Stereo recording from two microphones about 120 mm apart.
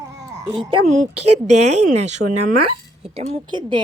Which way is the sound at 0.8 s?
75° right (ahead or behind).